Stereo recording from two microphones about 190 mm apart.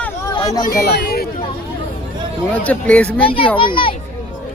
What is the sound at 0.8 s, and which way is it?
Speech, 55° left (ahead or behind).